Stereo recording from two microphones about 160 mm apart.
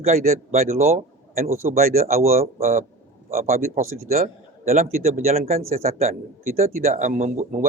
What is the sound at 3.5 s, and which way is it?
Speech, 60° right (ahead or behind).